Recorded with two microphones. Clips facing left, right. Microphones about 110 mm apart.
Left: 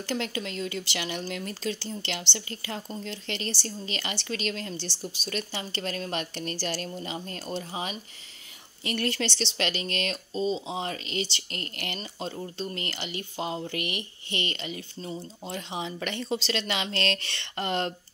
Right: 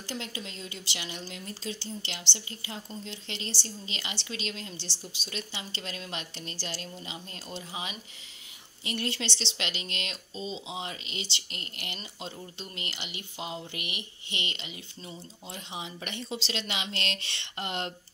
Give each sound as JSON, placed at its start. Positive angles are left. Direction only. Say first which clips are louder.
{"t": 0.0, "sound": "speech", "louder": "left 7 dB", "side_deg": 65}
{"t": 8.8, "sound": "speech", "louder": "left 4 dB", "side_deg": 55}
{"t": 15.5, "sound": "speech", "louder": "left 6 dB", "side_deg": 55}